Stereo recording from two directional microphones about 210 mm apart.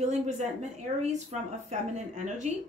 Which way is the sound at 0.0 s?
35° right (ahead or behind).